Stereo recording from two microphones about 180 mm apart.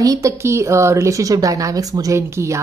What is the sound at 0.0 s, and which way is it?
A woman's voice, 20° right (ahead or behind).